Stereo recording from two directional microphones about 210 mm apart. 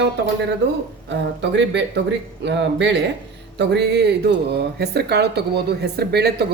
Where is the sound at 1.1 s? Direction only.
55° right (ahead or behind).